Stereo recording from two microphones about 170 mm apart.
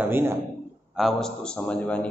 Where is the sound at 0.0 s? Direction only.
15° right (ahead or behind).